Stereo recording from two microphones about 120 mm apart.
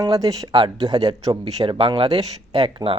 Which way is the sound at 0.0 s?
30° right (ahead or behind).